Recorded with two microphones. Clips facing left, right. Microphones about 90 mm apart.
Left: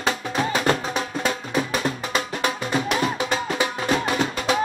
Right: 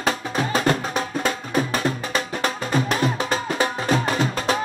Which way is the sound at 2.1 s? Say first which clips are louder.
Even; 40° right (ahead or behind).